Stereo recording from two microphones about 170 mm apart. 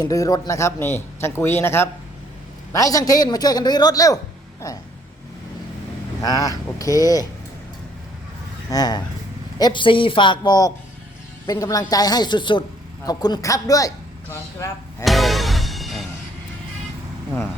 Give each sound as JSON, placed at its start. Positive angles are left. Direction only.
{"t": 0.0, "sound": "a man's voice", "side_deg": 20}
{"t": 6.2, "sound": "a man's voice", "side_deg": 20}
{"t": 8.7, "sound": "a man's voice", "side_deg": 25}
{"t": 15.0, "sound": "music", "side_deg": 0}